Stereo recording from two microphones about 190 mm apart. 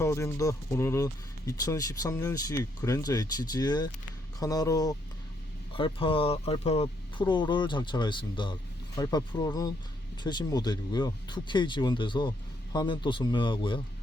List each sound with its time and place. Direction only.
0.0 s speech: 15° left (ahead or behind)